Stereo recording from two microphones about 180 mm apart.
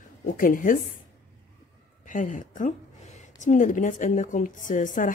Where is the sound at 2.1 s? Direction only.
45° left (ahead or behind).